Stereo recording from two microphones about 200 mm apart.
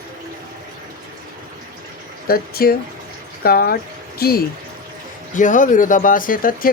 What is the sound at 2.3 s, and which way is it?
Speech, 50° left (ahead or behind).